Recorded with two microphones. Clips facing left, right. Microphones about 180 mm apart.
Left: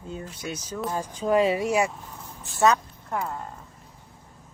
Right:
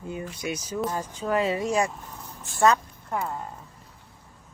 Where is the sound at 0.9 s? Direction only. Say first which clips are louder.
Left 6 dB; 15° left (ahead or behind); by 3.4 s centre (ahead or behind).